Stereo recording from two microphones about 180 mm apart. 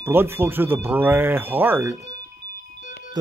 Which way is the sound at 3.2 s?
25° right (ahead or behind).